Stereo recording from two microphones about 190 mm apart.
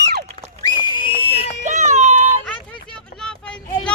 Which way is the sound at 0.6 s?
25° left (ahead or behind).